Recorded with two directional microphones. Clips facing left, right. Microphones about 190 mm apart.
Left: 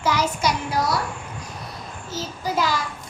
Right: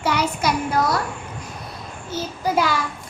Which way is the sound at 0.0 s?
60° right (ahead or behind).